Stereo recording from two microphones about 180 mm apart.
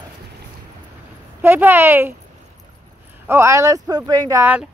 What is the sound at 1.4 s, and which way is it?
Speech, 10° right (ahead or behind).